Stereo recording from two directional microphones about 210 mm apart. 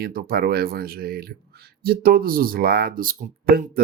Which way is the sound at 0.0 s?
45° right (ahead or behind).